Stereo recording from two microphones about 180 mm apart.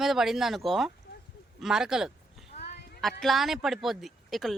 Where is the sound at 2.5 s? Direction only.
35° left (ahead or behind).